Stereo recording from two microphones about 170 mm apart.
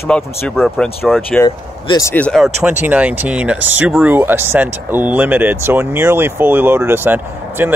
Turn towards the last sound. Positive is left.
turn(degrees=-10)  # may be behind; listen again after turning